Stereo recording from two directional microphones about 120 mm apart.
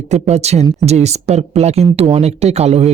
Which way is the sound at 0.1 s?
65° right (ahead or behind).